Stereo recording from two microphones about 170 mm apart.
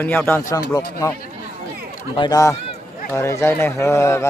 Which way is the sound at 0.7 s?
20° left (ahead or behind).